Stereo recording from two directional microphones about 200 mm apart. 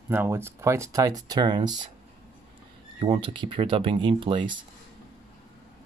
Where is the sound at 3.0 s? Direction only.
25° right (ahead or behind).